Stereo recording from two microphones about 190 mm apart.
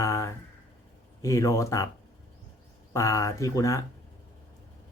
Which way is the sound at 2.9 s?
15° left (ahead or behind).